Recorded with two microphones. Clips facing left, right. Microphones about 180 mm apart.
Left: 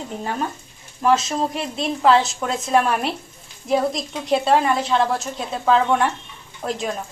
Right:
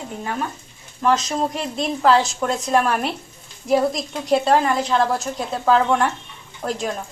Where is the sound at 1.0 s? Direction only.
5° left (ahead or behind).